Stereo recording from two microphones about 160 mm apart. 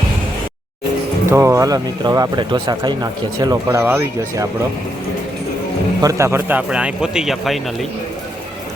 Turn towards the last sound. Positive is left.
turn(degrees=-5)  # may be behind; listen again after turning